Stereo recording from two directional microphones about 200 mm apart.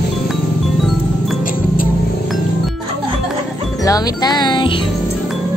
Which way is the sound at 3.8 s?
20° left (ahead or behind).